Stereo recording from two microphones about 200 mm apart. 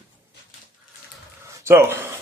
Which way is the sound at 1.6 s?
10° right (ahead or behind).